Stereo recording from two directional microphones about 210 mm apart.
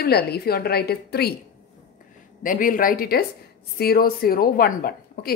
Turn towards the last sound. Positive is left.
turn(degrees=45)  # may be behind; listen again after turning